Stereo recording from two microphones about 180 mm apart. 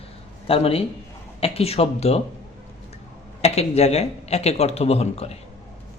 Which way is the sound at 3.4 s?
35° left (ahead or behind).